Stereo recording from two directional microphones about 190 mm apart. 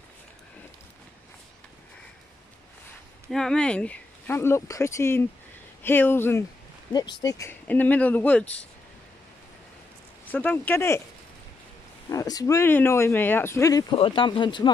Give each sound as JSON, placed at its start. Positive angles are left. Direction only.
{"t": 3.3, "sound": "speech", "side_deg": 5}
{"t": 10.2, "sound": "speech", "side_deg": 10}
{"t": 12.1, "sound": "speech", "side_deg": 20}